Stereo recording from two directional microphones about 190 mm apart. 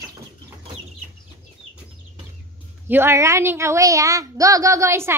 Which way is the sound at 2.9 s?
15° right (ahead or behind).